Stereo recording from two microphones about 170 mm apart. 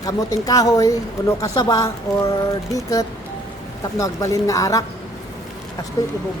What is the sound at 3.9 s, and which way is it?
Speech, 20° left (ahead or behind).